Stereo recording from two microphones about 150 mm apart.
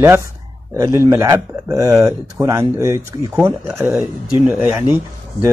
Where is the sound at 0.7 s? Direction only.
20° right (ahead or behind).